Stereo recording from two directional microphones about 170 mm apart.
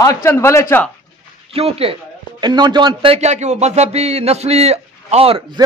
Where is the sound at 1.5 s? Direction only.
35° right (ahead or behind).